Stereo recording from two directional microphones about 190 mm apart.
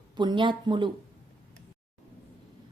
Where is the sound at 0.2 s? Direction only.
25° right (ahead or behind).